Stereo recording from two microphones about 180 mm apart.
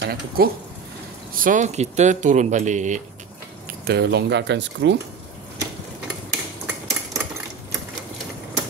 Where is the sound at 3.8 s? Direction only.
65° right (ahead or behind); by 4.9 s 80° right.